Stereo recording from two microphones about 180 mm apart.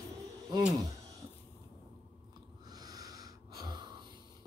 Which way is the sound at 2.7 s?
20° right (ahead or behind).